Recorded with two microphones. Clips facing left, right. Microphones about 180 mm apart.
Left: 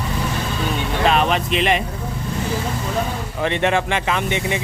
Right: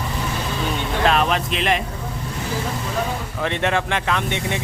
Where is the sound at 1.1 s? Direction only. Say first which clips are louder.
Left 1 dB; centre (ahead or behind).